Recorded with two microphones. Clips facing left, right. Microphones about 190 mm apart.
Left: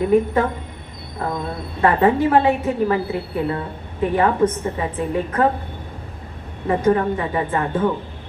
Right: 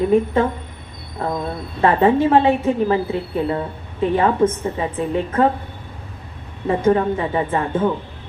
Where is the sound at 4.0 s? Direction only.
25° right (ahead or behind).